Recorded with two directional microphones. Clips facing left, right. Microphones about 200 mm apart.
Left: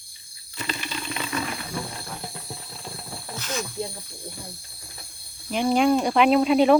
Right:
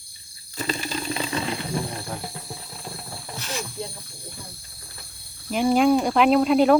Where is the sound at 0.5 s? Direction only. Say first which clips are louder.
Right 4 dB; 35° right (ahead or behind).